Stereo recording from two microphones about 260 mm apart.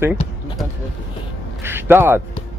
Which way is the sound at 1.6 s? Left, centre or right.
Centre.